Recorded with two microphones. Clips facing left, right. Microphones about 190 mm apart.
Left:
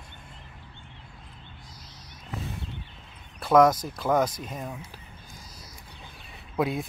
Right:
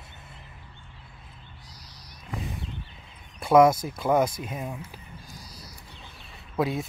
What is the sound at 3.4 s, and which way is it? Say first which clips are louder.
Speech: right 1 dB; 10° right (ahead or behind).